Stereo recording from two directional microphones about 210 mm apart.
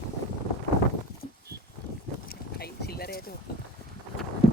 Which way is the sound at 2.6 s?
50° left (ahead or behind).